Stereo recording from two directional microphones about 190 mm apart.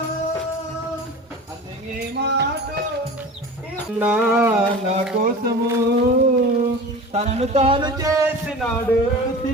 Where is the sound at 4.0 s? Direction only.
10° right (ahead or behind).